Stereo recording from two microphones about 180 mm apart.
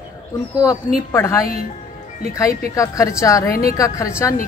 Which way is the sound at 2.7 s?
15° left (ahead or behind).